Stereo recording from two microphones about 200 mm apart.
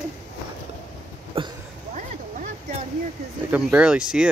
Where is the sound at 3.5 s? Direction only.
5° right (ahead or behind).